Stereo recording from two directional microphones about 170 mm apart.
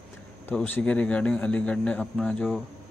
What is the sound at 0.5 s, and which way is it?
Speech, 10° left (ahead or behind).